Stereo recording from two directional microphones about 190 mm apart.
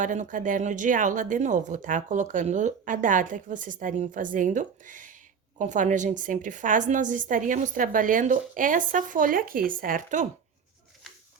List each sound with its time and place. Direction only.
0.0 s speech: 40° right (ahead or behind)